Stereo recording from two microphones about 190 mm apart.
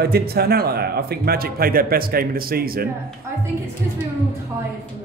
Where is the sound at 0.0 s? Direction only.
55° right (ahead or behind).